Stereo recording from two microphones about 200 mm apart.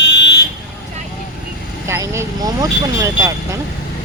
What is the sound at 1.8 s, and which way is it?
Speech, 15° right (ahead or behind).